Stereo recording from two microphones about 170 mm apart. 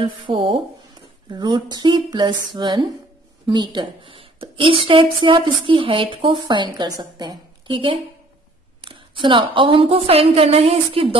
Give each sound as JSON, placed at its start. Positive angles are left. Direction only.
{"t": 0.0, "sound": "a woman's voice", "side_deg": -30}